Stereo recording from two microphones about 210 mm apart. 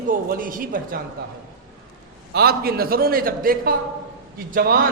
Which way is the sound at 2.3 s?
45° right (ahead or behind).